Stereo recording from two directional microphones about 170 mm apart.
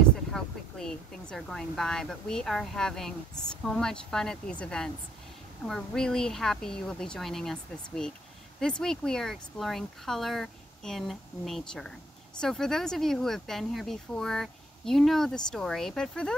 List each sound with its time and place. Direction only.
0.3 s speech: 5° left (ahead or behind)